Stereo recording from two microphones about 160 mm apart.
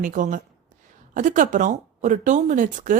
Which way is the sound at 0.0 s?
55° right (ahead or behind).